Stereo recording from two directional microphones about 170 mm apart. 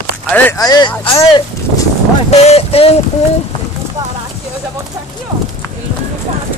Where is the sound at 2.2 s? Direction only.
40° left (ahead or behind).